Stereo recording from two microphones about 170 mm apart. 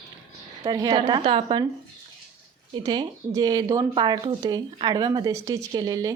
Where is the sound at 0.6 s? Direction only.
25° right (ahead or behind).